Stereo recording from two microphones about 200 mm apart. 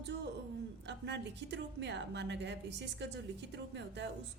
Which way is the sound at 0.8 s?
60° right (ahead or behind).